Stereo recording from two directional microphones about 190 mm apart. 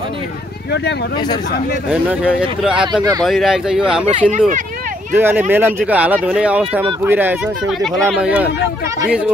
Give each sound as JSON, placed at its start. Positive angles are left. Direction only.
{"t": 1.9, "sound": "speech", "side_deg": -5}
{"t": 2.8, "sound": "speech", "side_deg": -25}
{"t": 3.3, "sound": "speech", "side_deg": 0}
{"t": 4.3, "sound": "speech", "side_deg": -45}
{"t": 5.1, "sound": "speech", "side_deg": -10}
{"t": 7.8, "sound": "speech", "side_deg": 0}